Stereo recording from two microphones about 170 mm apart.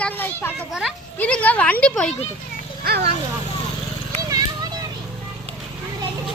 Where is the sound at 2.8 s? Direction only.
65° right (ahead or behind).